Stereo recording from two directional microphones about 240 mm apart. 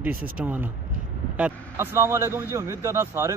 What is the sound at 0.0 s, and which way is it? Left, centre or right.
A man's voice, centre.